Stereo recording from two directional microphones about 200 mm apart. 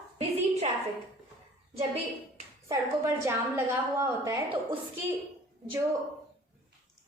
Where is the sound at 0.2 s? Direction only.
30° right (ahead or behind).